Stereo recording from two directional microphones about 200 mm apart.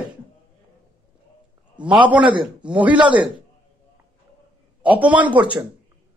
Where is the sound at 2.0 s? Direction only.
25° right (ahead or behind).